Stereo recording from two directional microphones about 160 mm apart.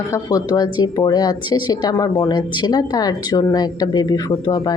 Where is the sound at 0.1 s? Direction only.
20° left (ahead or behind).